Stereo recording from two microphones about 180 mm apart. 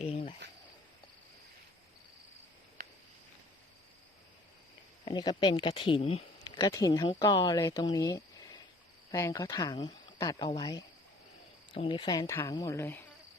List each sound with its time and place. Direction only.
0.4 s cricket: 70° right (ahead or behind)
5.0 s speech: 25° left (ahead or behind)